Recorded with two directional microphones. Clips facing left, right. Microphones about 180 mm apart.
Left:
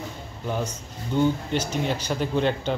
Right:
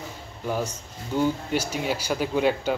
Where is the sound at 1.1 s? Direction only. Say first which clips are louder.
Left 1 dB; 10° right (ahead or behind).